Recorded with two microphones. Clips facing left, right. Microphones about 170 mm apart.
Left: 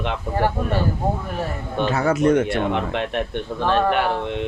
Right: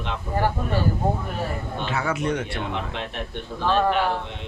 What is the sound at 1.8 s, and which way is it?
A man's voice, 40° left (ahead or behind).